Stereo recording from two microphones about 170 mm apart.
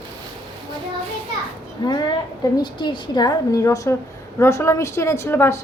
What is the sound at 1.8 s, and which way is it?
A woman's voice, 25° left (ahead or behind).